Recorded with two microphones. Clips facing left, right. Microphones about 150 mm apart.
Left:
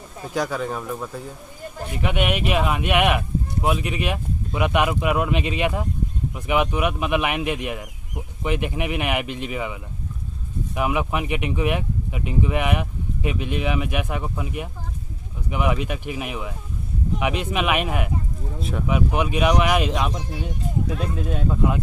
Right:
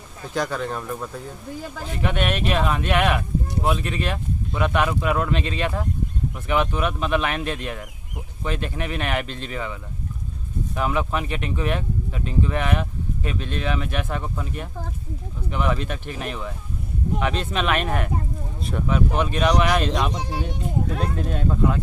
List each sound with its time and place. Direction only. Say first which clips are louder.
0.3 s speech: left 1 dB; 5° left (ahead or behind)
18.9 s speech: even; 10° left (ahead or behind)
20.2 s speech: right 3 dB; 90° right
21.3 s speech: even; 5° left (ahead or behind)